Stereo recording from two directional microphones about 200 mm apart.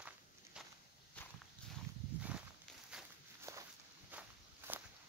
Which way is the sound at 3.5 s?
15° right (ahead or behind).